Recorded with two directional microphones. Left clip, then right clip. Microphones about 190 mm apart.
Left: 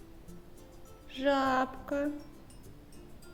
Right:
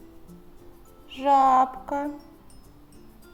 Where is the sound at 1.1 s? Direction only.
5° right (ahead or behind).